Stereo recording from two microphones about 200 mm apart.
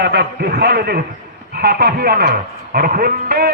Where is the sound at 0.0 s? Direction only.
55° right (ahead or behind).